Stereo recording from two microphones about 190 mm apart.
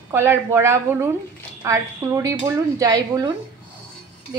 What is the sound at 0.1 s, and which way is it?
A woman's voice, 10° right (ahead or behind).